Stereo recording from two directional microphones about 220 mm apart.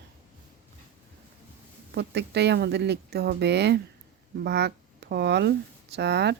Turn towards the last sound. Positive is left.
turn(degrees=-50)  # may be behind; listen again after turning